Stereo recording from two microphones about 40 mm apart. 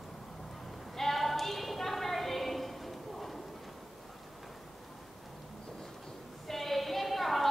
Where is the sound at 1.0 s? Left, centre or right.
Centre.